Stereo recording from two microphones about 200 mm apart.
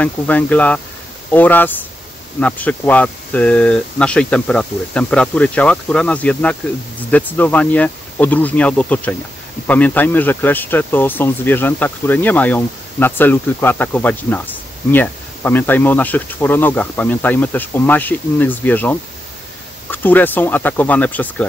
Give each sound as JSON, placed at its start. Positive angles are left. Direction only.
{"t": 0.0, "sound": "speech", "side_deg": 5}